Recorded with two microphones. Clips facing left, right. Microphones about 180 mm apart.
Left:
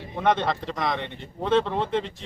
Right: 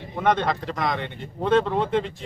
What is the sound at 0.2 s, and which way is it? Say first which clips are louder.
Speech: right 1 dB; centre (ahead or behind).